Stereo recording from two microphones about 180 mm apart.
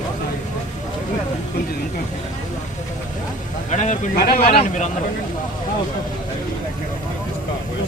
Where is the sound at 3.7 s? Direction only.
40° left (ahead or behind).